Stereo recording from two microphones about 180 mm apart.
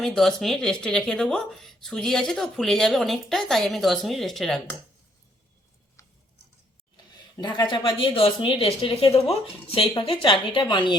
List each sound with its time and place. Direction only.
0.0 s speech: centre (ahead or behind)
6.9 s a woman's voice: 25° left (ahead or behind)